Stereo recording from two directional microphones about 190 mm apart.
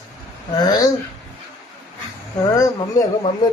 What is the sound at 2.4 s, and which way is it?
Speech, 20° left (ahead or behind).